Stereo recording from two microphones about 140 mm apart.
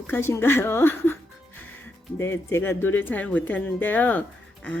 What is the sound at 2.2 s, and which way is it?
Speech, 20° left (ahead or behind).